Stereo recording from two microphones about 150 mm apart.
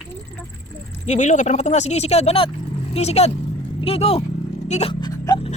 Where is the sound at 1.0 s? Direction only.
50° left (ahead or behind).